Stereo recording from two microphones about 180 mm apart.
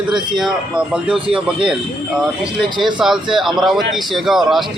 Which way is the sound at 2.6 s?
25° right (ahead or behind).